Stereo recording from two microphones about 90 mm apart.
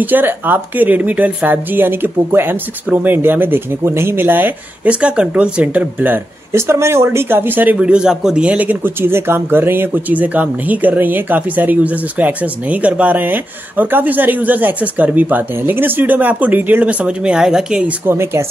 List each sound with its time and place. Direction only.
0.0 s speech: 20° right (ahead or behind)
18.0 s speech: 30° right (ahead or behind)